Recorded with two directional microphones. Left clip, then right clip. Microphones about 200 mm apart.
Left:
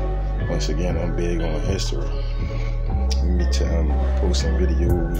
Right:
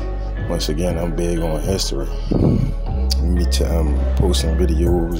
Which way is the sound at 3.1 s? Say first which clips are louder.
Right 5 dB; 30° right (ahead or behind).